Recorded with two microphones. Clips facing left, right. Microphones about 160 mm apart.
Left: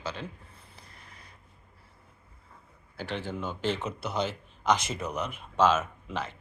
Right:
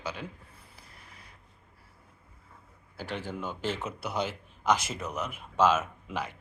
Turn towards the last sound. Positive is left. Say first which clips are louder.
# even
turn(degrees=-10)  # may be behind; listen again after turning